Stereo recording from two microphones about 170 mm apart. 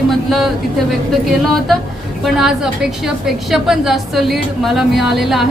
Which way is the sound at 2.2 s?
5° right (ahead or behind).